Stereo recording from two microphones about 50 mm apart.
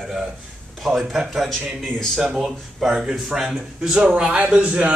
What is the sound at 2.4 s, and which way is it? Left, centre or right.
Speech, centre.